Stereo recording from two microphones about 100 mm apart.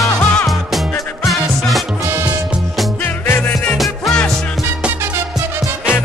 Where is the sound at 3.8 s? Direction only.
5° left (ahead or behind).